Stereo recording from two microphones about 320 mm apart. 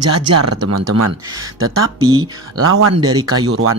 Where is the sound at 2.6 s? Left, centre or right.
Right.